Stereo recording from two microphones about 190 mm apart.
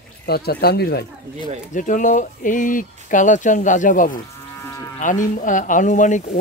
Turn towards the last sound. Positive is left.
turn(degrees=40)  # may be behind; listen again after turning